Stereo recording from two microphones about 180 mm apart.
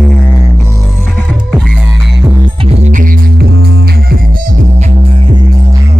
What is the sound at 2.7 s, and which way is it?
Music, 45° right (ahead or behind).